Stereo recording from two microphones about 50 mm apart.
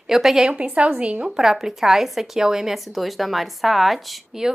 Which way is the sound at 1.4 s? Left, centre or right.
Centre.